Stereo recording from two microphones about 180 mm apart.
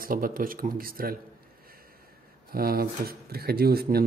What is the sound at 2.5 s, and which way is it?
Speech, 55° right (ahead or behind).